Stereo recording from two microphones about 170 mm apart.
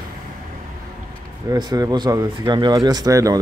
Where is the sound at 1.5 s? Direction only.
20° right (ahead or behind).